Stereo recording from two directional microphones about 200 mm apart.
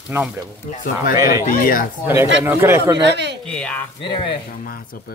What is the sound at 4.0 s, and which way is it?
Speech, 25° left (ahead or behind).